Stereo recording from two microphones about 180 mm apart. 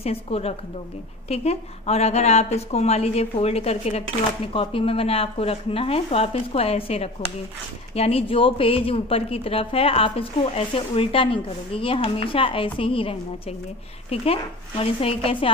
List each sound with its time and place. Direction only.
0.0 s speech: 35° left (ahead or behind)